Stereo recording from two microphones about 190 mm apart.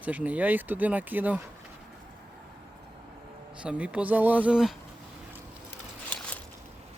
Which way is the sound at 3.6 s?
5° right (ahead or behind).